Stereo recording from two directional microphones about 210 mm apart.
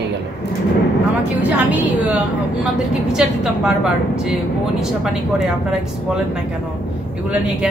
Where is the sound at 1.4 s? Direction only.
5° right (ahead or behind).